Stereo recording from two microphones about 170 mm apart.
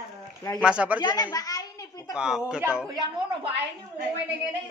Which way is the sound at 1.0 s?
25° left (ahead or behind).